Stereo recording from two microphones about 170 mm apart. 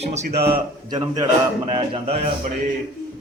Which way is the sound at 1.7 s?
35° right (ahead or behind).